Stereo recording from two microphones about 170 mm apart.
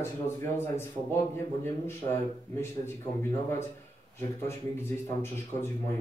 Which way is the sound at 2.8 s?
50° right (ahead or behind).